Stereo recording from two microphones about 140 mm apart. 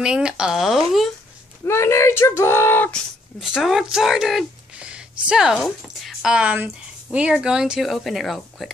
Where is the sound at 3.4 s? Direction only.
5° right (ahead or behind).